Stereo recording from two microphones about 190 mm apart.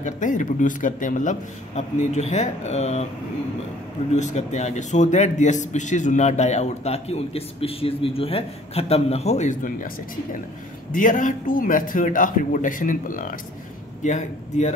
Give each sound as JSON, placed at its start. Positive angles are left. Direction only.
{"t": 0.0, "sound": "a man's voice", "side_deg": 40}
{"t": 4.1, "sound": "a man's voice", "side_deg": 40}
{"t": 10.9, "sound": "a man's voice", "side_deg": 45}